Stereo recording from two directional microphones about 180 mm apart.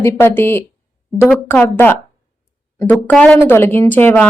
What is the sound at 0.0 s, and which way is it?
A woman's voice, 15° left (ahead or behind).